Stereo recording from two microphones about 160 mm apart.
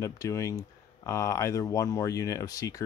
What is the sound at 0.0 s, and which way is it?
Speech, 20° left (ahead or behind).